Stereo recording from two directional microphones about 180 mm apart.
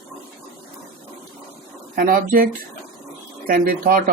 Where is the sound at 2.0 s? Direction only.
50° right (ahead or behind).